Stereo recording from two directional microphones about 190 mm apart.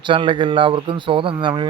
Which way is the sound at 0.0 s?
25° right (ahead or behind).